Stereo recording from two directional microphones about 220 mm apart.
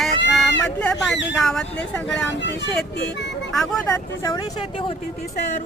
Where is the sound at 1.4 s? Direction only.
Centre (ahead or behind).